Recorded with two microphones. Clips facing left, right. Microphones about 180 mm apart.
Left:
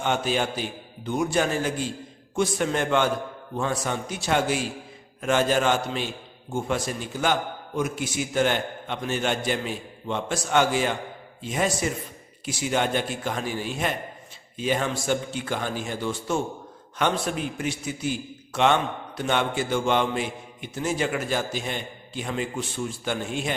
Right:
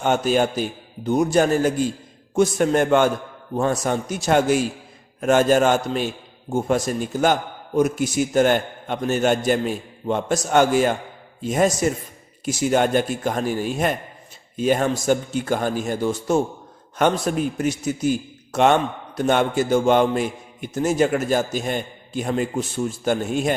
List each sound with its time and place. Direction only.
0.0 s a man's voice: 45° right (ahead or behind)